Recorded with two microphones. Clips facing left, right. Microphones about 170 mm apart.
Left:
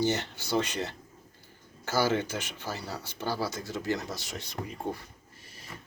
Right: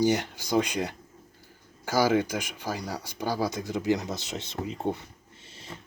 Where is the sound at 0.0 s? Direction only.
10° right (ahead or behind).